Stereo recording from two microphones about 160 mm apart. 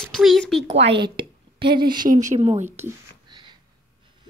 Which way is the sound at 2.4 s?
45° right (ahead or behind).